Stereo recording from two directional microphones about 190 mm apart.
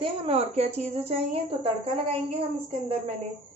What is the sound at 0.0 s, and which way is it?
A woman's voice, 30° right (ahead or behind).